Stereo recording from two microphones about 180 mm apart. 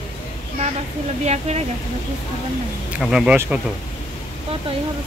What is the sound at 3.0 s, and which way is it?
Speech, 5° right (ahead or behind).